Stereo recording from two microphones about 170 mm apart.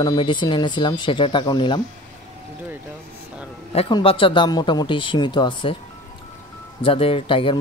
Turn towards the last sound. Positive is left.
turn(degrees=30)  # may be behind; listen again after turning